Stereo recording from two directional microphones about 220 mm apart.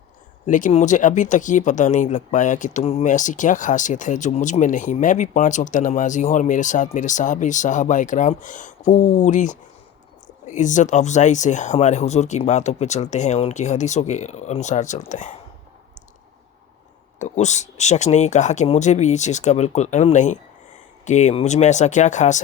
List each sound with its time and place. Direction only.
0.4 s speech: 35° left (ahead or behind)
17.2 s speech: 30° left (ahead or behind)